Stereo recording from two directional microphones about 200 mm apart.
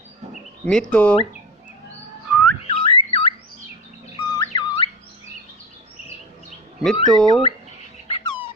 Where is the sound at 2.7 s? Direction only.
25° left (ahead or behind).